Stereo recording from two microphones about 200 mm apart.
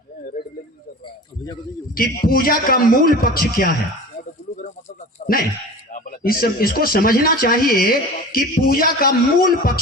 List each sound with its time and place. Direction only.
2.0 s speech: 45° left (ahead or behind)
5.2 s speech: 45° left (ahead or behind)